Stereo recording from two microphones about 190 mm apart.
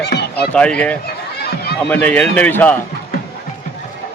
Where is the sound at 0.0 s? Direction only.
60° left (ahead or behind).